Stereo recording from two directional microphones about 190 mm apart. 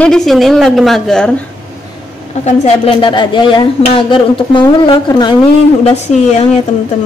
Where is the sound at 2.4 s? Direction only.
35° left (ahead or behind).